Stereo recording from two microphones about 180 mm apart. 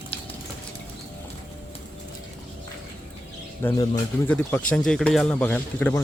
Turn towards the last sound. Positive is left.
turn(degrees=10)  # may be behind; listen again after turning